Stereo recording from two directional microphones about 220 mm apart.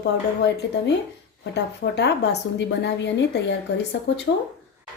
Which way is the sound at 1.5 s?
50° left (ahead or behind).